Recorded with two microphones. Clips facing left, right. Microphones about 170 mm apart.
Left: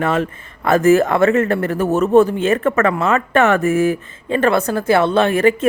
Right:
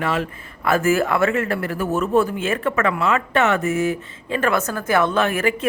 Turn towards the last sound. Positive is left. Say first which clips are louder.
# left 6 dB
turn(degrees=35)  # may be behind; listen again after turning